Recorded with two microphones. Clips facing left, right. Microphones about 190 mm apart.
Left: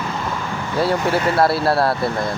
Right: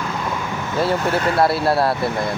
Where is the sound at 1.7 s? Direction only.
20° right (ahead or behind).